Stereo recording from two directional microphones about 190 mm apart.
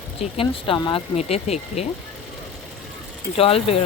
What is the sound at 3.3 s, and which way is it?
Speech, 30° left (ahead or behind).